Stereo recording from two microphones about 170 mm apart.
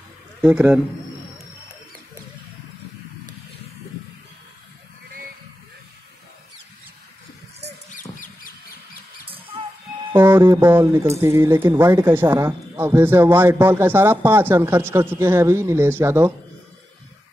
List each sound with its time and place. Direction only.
0.4 s speech: 10° right (ahead or behind)
7.9 s a sound: 50° left (ahead or behind)
10.1 s speech: 15° right (ahead or behind)